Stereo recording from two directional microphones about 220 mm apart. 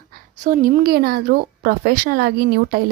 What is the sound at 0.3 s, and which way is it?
Speech, 35° right (ahead or behind).